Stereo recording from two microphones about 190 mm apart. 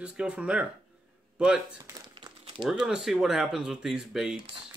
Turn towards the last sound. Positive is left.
turn(degrees=-5)  # may be behind; listen again after turning